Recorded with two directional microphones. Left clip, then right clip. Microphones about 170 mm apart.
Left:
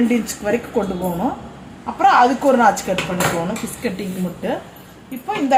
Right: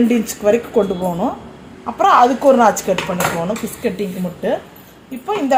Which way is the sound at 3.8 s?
35° right (ahead or behind).